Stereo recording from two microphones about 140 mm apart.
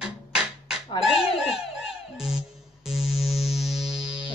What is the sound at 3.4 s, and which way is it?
Music, centre (ahead or behind).